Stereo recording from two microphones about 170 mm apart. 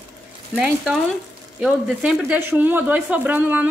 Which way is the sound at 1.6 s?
5° right (ahead or behind).